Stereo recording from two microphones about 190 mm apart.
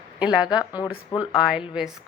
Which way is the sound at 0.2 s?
5° right (ahead or behind).